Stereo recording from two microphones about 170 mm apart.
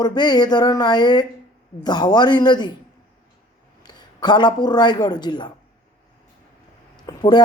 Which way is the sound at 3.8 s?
25° left (ahead or behind).